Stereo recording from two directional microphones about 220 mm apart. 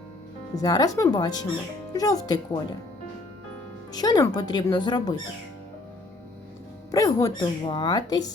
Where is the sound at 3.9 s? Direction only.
15° left (ahead or behind).